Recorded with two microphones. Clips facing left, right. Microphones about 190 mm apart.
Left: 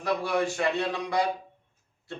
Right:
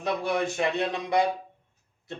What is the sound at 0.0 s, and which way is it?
Speech, 20° right (ahead or behind).